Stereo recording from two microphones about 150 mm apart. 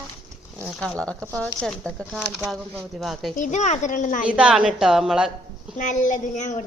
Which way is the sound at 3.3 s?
55° left (ahead or behind).